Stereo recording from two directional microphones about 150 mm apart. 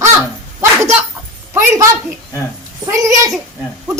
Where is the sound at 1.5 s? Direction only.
20° right (ahead or behind).